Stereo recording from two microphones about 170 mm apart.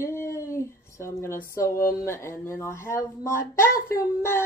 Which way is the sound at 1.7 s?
55° left (ahead or behind).